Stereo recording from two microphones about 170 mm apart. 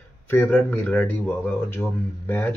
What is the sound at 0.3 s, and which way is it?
Speech, 10° left (ahead or behind).